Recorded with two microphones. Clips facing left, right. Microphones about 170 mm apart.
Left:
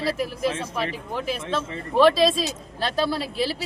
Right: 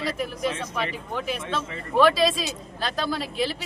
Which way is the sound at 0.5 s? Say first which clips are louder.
Left 1 dB; 30° left (ahead or behind).